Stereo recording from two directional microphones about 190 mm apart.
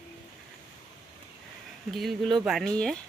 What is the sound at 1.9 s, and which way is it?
Speech, centre (ahead or behind).